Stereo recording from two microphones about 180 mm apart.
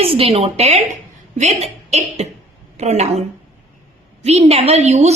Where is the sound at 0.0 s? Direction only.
30° right (ahead or behind).